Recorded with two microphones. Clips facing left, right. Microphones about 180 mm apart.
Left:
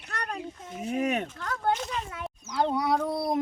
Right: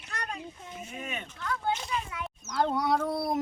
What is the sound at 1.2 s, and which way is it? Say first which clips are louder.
Speech: left 1 dB; 45° left (ahead or behind).